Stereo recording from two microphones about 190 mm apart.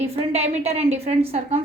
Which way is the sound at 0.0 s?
35° right (ahead or behind).